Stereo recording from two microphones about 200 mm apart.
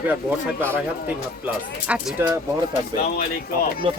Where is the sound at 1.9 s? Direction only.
10° right (ahead or behind).